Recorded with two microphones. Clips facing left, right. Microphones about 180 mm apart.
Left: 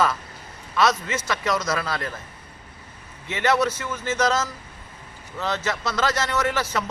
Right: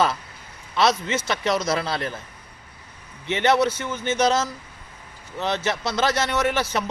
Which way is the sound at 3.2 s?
25° right (ahead or behind).